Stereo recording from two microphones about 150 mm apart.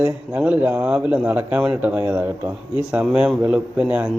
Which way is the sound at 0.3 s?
10° right (ahead or behind).